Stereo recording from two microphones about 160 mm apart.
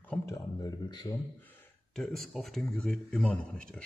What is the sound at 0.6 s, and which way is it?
Speech, 25° left (ahead or behind).